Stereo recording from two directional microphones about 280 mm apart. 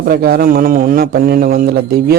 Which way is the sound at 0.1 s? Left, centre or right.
Right.